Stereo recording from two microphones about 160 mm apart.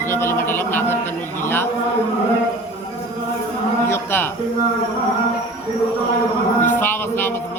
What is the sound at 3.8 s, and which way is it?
Speech, 15° left (ahead or behind).